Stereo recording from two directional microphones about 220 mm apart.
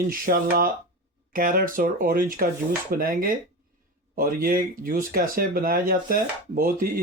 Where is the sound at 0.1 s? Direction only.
40° right (ahead or behind).